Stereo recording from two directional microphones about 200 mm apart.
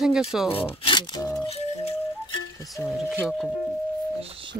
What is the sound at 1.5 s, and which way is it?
Music, 30° left (ahead or behind).